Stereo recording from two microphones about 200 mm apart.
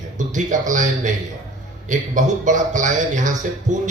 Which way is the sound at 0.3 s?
40° right (ahead or behind).